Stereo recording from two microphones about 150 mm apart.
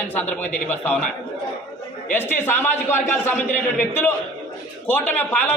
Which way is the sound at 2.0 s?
15° left (ahead or behind).